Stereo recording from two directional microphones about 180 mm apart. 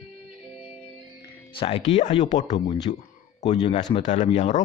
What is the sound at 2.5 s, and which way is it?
Speech, 20° left (ahead or behind).